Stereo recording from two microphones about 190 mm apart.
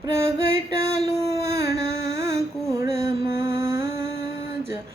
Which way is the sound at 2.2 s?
15° right (ahead or behind).